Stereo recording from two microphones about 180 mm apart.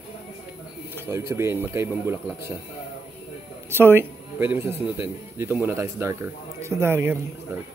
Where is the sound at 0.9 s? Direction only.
15° right (ahead or behind).